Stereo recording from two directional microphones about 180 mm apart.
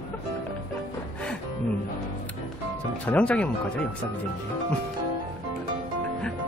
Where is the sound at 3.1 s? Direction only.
5° left (ahead or behind).